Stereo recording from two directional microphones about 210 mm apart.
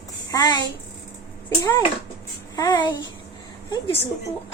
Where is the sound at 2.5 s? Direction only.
20° left (ahead or behind).